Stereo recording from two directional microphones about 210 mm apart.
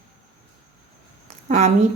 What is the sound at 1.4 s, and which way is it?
Speech, 30° right (ahead or behind).